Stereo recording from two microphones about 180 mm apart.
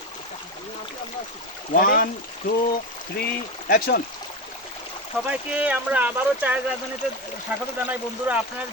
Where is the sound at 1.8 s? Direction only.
55° left (ahead or behind).